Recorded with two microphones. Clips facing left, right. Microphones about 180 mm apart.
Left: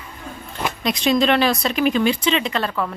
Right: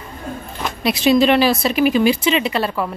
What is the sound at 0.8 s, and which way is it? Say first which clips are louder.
Speech: right 4 dB; 5° right (ahead or behind).